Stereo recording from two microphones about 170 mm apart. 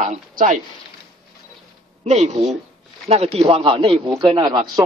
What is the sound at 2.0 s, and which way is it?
Speech, 40° right (ahead or behind).